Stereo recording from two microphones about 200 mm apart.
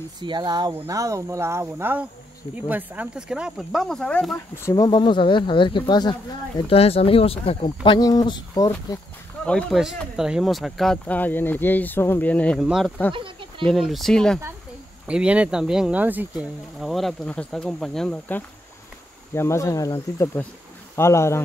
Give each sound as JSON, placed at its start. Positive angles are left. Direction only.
{"t": 0.2, "sound": "speech", "side_deg": -20}
{"t": 4.6, "sound": "speech", "side_deg": 15}
{"t": 9.5, "sound": "speech", "side_deg": 5}
{"t": 13.1, "sound": "a sound", "side_deg": -25}
{"t": 13.7, "sound": "speech", "side_deg": 0}